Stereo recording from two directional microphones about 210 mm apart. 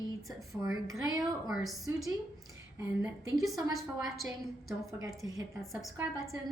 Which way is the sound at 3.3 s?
Centre (ahead or behind).